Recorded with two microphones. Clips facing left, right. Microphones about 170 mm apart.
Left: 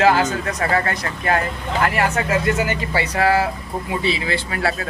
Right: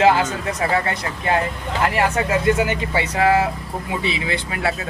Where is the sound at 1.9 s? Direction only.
25° right (ahead or behind).